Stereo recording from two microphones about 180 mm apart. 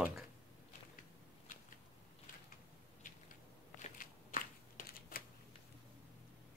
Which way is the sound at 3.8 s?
50° left (ahead or behind).